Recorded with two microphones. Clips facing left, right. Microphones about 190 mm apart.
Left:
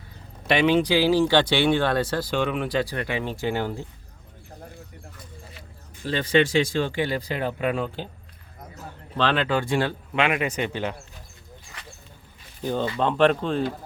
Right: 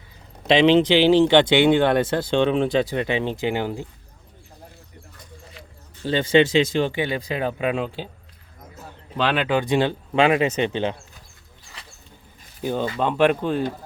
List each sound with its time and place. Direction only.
0.4 s speech: 20° right (ahead or behind)
6.1 s speech: 25° right (ahead or behind)
9.1 s speech: 15° right (ahead or behind)
10.2 s speech: 30° right (ahead or behind)
12.6 s speech: 10° right (ahead or behind)